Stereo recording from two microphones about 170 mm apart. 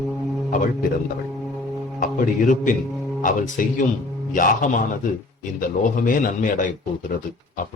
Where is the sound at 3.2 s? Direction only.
50° left (ahead or behind).